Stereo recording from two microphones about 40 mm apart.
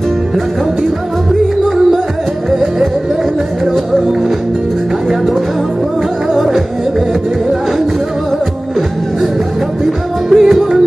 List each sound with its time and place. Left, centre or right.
2.5 s music: centre
6.3 s music: centre
9.8 s music: centre